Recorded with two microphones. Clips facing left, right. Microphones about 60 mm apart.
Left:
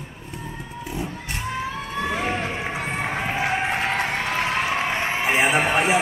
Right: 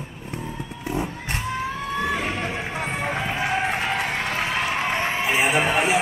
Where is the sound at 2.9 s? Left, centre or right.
Centre.